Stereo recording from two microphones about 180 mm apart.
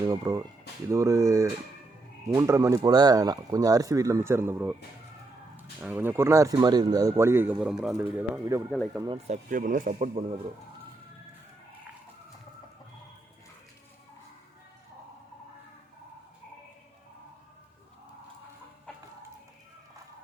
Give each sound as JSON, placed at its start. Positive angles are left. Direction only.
{"t": 0.0, "sound": "speech", "side_deg": -20}
{"t": 5.8, "sound": "speech", "side_deg": -10}
{"t": 8.7, "sound": "speech", "side_deg": 0}
{"t": 9.1, "sound": "speech", "side_deg": -40}